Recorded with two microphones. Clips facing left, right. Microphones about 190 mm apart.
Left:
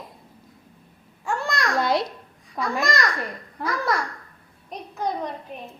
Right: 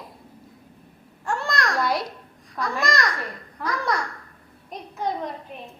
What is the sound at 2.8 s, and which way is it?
A woman's voice, centre (ahead or behind).